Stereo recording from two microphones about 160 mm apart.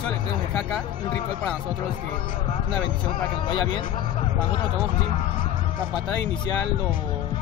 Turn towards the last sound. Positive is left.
turn(degrees=30)  # may be behind; listen again after turning